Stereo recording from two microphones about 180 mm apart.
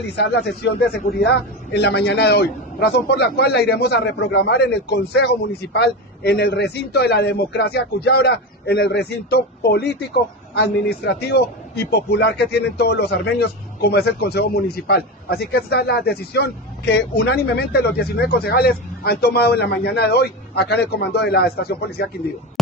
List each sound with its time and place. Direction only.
0.1 s a man's voice: 70° left (ahead or behind)